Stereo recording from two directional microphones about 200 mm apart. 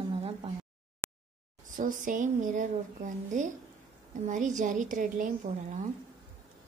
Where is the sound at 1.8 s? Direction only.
40° right (ahead or behind).